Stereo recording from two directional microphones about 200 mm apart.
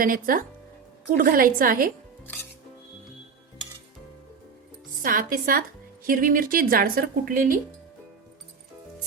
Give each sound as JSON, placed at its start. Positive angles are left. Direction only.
{"t": 0.0, "sound": "a woman's voice", "side_deg": -45}
{"t": 2.2, "sound": "music", "side_deg": 10}
{"t": 5.0, "sound": "a woman's voice", "side_deg": -45}